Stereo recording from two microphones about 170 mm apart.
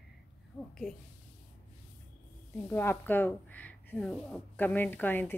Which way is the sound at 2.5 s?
10° left (ahead or behind).